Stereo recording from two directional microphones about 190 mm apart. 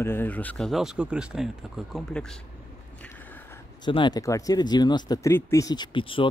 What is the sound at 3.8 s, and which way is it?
Speech, 25° left (ahead or behind).